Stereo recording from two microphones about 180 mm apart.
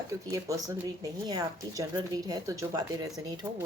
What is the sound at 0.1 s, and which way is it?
Speech, 20° right (ahead or behind).